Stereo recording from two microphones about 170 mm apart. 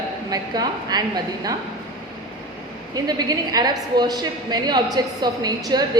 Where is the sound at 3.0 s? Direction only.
20° right (ahead or behind).